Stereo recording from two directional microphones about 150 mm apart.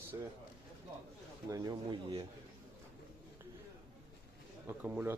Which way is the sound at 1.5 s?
25° right (ahead or behind).